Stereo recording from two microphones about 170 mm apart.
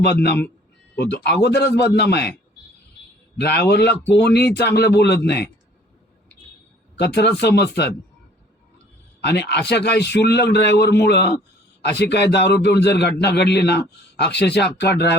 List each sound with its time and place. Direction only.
0.0 s a man's voice: 75° left (ahead or behind)
3.4 s a man's voice: 75° left (ahead or behind)
7.0 s a man's voice: 75° left (ahead or behind)
9.2 s a man's voice: 80° left